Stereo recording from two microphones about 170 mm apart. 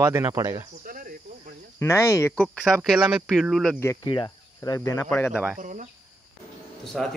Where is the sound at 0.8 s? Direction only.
55° right (ahead or behind).